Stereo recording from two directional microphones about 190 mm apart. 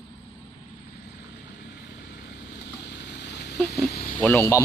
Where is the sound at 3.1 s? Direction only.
65° left (ahead or behind).